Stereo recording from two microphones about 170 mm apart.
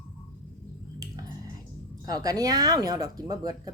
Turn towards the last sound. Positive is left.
turn(degrees=-20)  # may be behind; listen again after turning